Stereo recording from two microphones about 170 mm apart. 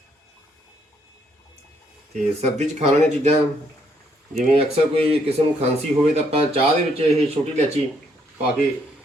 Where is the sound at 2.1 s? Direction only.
40° right (ahead or behind).